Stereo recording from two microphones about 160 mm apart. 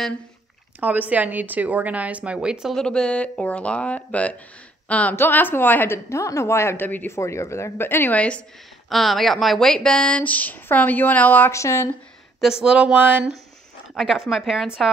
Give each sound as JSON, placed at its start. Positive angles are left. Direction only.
{"t": 0.7, "sound": "a woman's voice", "side_deg": -10}
{"t": 12.4, "sound": "a woman's voice", "side_deg": -5}